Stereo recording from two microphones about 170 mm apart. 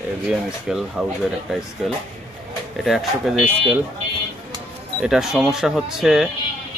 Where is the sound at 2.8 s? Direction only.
Centre (ahead or behind).